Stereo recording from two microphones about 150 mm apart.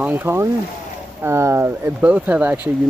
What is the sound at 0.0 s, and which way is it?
Speech, 15° right (ahead or behind).